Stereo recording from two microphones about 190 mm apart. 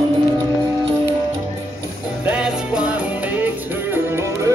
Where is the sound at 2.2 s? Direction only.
5° right (ahead or behind).